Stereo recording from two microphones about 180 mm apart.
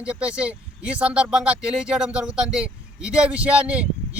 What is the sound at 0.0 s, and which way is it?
Speech, 5° right (ahead or behind).